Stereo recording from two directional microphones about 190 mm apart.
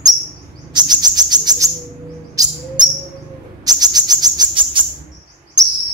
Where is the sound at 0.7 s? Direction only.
20° right (ahead or behind).